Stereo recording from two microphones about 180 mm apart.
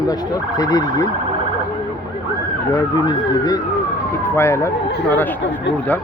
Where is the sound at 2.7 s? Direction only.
20° left (ahead or behind).